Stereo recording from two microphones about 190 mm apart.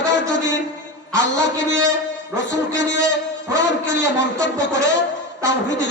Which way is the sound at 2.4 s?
65° left (ahead or behind).